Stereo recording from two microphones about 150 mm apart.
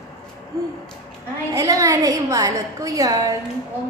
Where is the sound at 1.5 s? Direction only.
25° right (ahead or behind).